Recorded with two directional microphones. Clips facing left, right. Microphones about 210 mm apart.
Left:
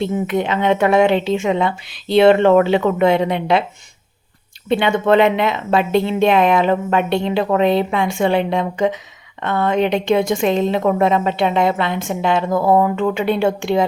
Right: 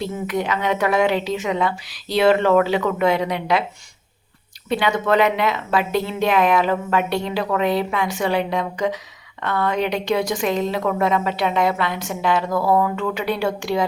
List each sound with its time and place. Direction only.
0.0 s a woman's voice: 25° left (ahead or behind)
4.7 s a woman's voice: 25° left (ahead or behind)